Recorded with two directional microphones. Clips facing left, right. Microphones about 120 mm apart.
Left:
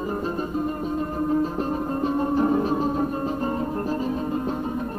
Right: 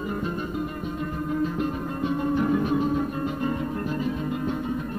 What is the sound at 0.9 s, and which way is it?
Music, 35° left (ahead or behind).